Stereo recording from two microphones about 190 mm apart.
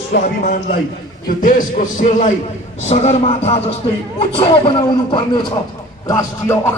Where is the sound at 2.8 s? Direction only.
35° left (ahead or behind).